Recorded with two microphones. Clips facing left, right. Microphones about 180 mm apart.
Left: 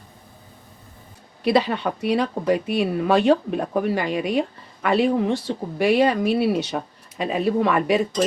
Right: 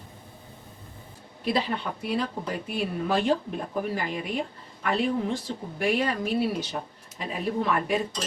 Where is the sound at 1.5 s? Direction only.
75° left (ahead or behind).